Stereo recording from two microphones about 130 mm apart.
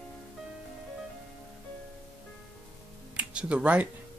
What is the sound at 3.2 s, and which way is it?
Speech, 10° right (ahead or behind).